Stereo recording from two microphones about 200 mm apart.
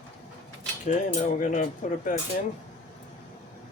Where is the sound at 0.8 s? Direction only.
40° left (ahead or behind).